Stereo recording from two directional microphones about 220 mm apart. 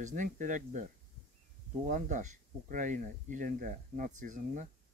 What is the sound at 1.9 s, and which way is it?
Speech, 35° right (ahead or behind).